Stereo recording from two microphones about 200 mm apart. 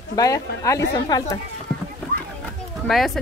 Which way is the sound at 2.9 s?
Centre (ahead or behind).